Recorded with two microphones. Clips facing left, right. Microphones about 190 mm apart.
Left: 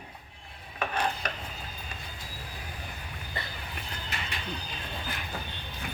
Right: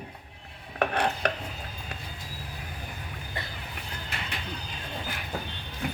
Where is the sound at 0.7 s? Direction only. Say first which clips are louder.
Right 4 dB; 65° right (ahead or behind).